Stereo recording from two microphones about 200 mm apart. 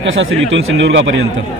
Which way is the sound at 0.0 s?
65° right (ahead or behind).